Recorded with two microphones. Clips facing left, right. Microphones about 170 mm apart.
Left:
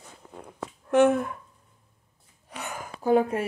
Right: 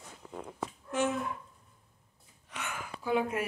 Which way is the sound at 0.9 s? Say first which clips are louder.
Left 11 dB; 60° left (ahead or behind).